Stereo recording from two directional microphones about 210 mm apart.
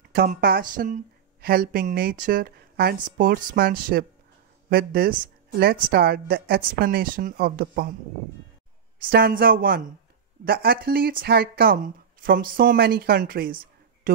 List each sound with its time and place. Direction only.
0.1 s speech: 45° right (ahead or behind)
9.1 s speech: 45° right (ahead or behind)